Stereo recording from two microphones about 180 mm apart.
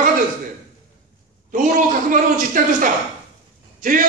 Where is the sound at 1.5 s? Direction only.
50° right (ahead or behind).